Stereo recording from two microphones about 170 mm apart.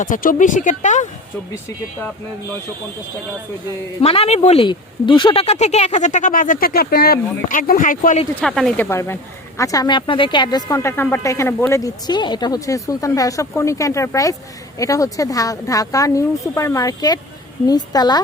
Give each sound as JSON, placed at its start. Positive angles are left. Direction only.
{"t": 0.0, "sound": "speech", "side_deg": 50}
{"t": 4.0, "sound": "speech", "side_deg": 35}
{"t": 8.4, "sound": "speech", "side_deg": 5}